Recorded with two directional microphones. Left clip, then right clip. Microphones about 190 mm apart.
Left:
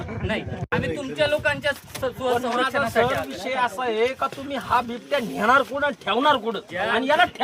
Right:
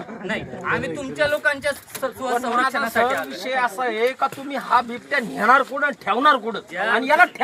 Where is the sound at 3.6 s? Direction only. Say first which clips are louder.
Right 1 dB; 15° left (ahead or behind).